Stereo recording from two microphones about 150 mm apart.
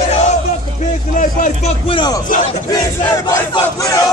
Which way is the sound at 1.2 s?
60° left (ahead or behind).